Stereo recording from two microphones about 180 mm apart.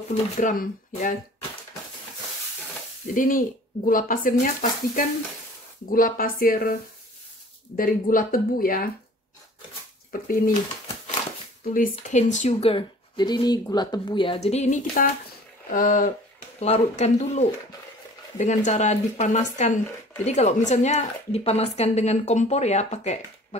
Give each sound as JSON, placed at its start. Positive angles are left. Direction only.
{"t": 0.1, "sound": "speech", "side_deg": 45}
{"t": 3.1, "sound": "speech", "side_deg": 50}
{"t": 10.1, "sound": "speech", "side_deg": 50}
{"t": 11.9, "sound": "a woman's voice", "side_deg": 40}
{"t": 16.5, "sound": "a woman's voice", "side_deg": 35}